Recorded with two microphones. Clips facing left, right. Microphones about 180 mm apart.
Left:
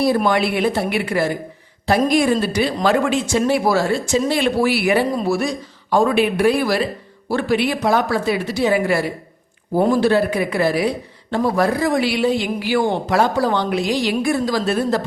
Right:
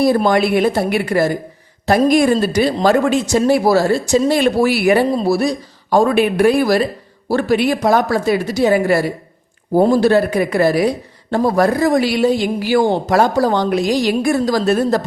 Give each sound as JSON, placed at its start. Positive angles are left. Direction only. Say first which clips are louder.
{"t": 0.2, "sound": "speech", "louder": "right 4 dB", "side_deg": -40}